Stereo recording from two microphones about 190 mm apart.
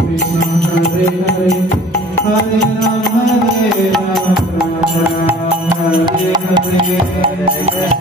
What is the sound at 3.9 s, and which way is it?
Music, centre (ahead or behind).